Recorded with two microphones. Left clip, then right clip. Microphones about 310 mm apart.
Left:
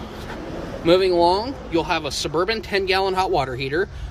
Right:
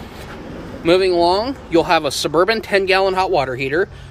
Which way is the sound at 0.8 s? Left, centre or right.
Centre.